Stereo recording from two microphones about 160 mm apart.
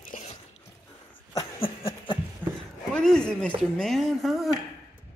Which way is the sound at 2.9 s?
5° left (ahead or behind).